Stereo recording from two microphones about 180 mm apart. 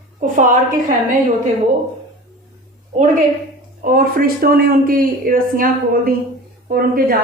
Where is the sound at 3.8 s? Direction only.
50° right (ahead or behind).